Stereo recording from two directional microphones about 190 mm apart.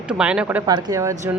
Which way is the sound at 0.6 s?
20° right (ahead or behind).